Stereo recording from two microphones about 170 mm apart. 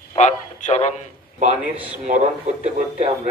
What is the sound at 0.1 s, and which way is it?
Speech, 45° left (ahead or behind).